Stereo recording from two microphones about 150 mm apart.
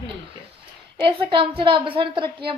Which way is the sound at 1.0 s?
35° right (ahead or behind).